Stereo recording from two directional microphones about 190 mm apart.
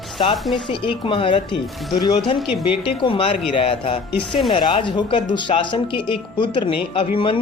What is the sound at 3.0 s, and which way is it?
Speech, 30° left (ahead or behind).